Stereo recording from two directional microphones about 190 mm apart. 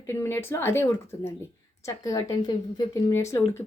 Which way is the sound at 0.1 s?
15° left (ahead or behind).